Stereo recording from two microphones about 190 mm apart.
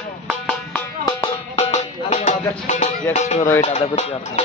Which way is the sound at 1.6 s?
35° left (ahead or behind).